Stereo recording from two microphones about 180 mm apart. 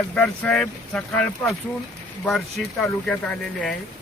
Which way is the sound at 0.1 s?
5° left (ahead or behind).